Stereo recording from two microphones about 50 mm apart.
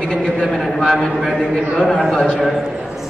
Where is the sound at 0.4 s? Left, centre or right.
Centre.